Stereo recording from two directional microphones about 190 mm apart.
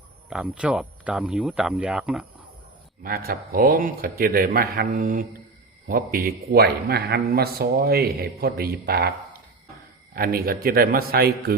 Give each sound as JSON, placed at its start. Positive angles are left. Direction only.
{"t": 0.3, "sound": "speech", "side_deg": -5}
{"t": 3.0, "sound": "a man's voice", "side_deg": -50}
{"t": 10.2, "sound": "a man's voice", "side_deg": -50}